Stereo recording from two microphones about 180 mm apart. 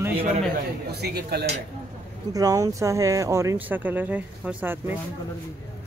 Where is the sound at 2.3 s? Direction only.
20° right (ahead or behind).